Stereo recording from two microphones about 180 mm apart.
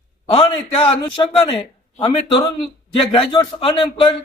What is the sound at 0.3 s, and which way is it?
A man's voice, 30° left (ahead or behind).